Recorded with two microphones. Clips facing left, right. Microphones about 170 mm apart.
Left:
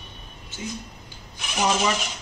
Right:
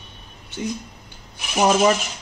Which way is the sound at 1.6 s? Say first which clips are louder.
Right 7 dB; 45° right (ahead or behind).